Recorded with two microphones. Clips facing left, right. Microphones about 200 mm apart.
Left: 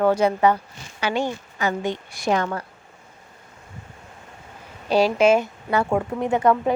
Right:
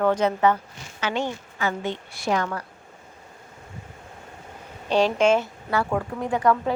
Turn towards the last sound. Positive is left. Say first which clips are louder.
# left 3 dB
turn(degrees=25)  # may be behind; listen again after turning